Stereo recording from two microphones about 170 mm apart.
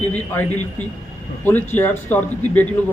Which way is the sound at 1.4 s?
10° left (ahead or behind).